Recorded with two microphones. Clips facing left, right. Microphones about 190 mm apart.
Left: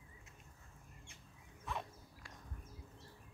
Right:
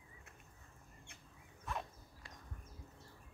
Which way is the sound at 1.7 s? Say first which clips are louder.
Even; centre (ahead or behind).